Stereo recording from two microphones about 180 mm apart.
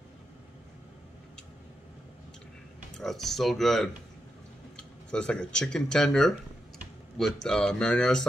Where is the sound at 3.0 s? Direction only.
Centre (ahead or behind).